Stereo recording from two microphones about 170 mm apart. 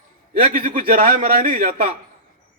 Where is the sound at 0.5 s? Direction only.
55° right (ahead or behind).